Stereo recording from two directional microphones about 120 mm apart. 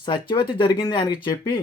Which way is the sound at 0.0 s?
40° left (ahead or behind).